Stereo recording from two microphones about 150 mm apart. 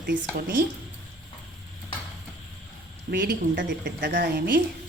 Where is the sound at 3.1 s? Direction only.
80° right.